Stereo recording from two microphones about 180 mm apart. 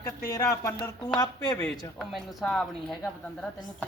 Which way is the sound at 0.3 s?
20° left (ahead or behind).